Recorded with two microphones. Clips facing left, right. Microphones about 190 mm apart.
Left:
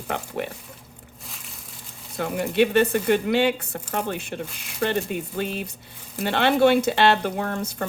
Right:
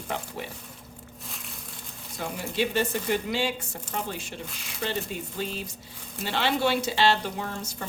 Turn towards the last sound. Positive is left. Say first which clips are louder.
# left 7 dB
turn(degrees=60)  # may be behind; listen again after turning